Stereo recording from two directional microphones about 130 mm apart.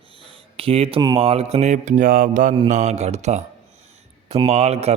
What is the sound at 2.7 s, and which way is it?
Speech, 65° right (ahead or behind).